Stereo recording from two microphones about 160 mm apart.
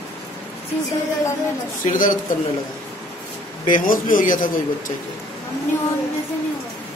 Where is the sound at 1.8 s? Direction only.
55° left (ahead or behind).